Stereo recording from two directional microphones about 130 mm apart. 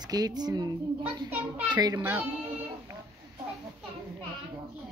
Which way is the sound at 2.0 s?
15° right (ahead or behind).